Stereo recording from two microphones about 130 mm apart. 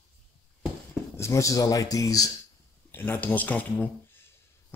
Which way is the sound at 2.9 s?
15° left (ahead or behind).